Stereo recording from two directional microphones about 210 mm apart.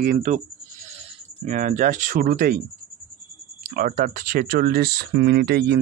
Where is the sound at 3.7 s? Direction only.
40° right (ahead or behind).